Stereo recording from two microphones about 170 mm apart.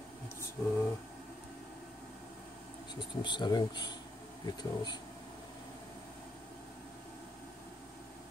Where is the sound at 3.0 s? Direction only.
25° left (ahead or behind).